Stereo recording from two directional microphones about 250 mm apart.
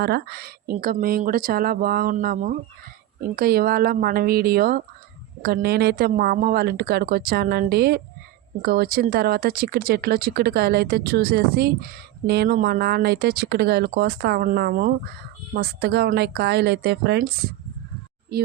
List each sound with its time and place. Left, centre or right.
0.0 s speech: right